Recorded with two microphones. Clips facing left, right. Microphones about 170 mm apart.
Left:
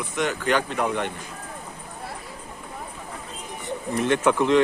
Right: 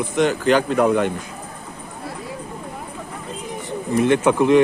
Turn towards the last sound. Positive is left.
turn(degrees=-15)  # may be behind; listen again after turning